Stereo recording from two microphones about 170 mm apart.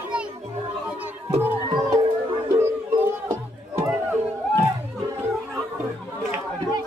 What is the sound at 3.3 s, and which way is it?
Music, 15° right (ahead or behind).